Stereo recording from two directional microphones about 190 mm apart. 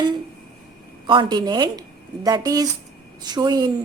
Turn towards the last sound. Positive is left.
turn(degrees=-20)  # may be behind; listen again after turning